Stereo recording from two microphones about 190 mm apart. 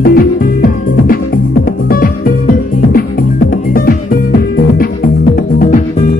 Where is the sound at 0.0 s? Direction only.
50° left (ahead or behind).